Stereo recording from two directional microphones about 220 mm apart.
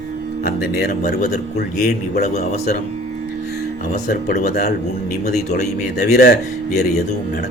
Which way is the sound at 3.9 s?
35° left (ahead or behind).